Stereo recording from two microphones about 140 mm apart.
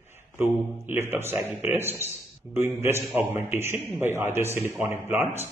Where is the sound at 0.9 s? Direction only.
15° right (ahead or behind).